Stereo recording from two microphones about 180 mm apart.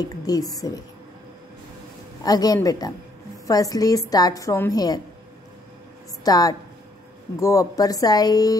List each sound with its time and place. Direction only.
0.0 s a woman's voice: 20° left (ahead or behind)
2.2 s a woman's voice: 20° left (ahead or behind)
6.2 s a woman's voice: 20° left (ahead or behind)